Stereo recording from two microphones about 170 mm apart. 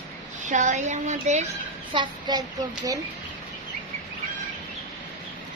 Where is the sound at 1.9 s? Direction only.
30° right (ahead or behind).